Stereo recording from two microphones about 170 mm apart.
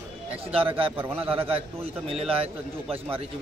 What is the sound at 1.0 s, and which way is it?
Speech, 10° right (ahead or behind).